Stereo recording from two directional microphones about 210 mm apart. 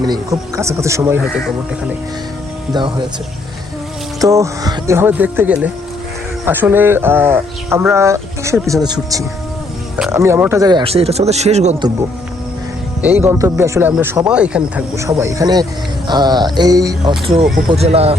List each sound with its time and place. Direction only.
0.0 s speech: 15° right (ahead or behind)
4.2 s speech: 15° right (ahead or behind); by 11.9 s 30° right (ahead or behind)
13.0 s speech: 10° right (ahead or behind); by 18.2 s 30° right (ahead or behind)